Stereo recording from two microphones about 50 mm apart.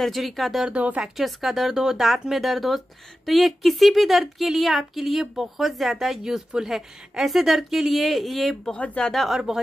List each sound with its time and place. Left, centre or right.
0.0 s speech: centre
0.7 s speech: right
1.0 s speech: centre
8.7 s speech: left
9.3 s speech: centre